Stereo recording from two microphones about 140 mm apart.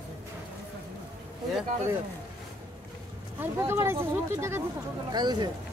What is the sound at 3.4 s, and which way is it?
Speech, 15° right (ahead or behind).